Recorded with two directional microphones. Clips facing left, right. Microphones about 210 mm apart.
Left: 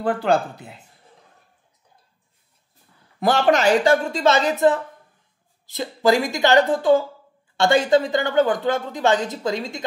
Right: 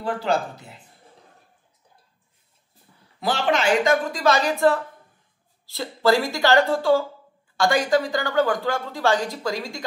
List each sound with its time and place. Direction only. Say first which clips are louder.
0.0 s speech: left 4 dB; 55° left (ahead or behind)
3.2 s a woman's voice: left 5 dB; 45° left (ahead or behind); by 9.8 s 20° left (ahead or behind)